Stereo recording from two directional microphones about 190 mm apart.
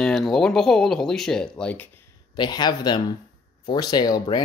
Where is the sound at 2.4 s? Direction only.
20° left (ahead or behind).